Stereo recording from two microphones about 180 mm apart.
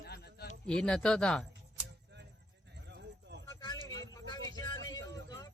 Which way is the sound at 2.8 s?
70° right (ahead or behind).